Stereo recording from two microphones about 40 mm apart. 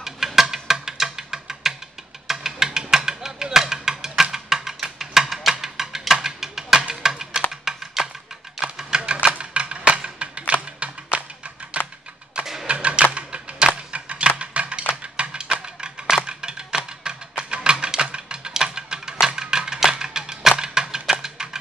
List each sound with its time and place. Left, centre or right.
0.4 s music: centre
7.0 s a sound: centre
7.6 s typing: centre
8.6 s music: right
13.1 s a sound: right
16.3 s music: right